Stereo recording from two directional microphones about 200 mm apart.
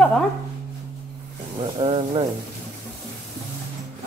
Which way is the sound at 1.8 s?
30° right (ahead or behind).